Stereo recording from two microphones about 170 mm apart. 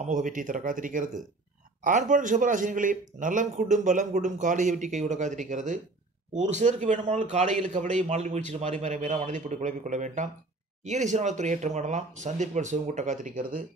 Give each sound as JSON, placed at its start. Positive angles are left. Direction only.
{"t": 0.0, "sound": "a man's voice", "side_deg": -50}